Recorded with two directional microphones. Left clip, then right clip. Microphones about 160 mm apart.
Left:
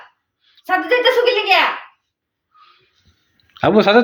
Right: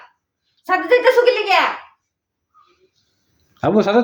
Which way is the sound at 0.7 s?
20° right (ahead or behind).